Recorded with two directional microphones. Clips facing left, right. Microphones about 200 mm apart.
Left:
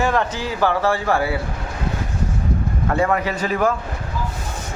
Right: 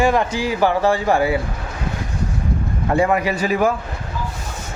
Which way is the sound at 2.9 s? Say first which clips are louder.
Right 3 dB; 15° right (ahead or behind).